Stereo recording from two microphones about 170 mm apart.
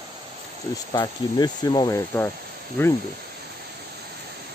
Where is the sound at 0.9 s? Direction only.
25° left (ahead or behind).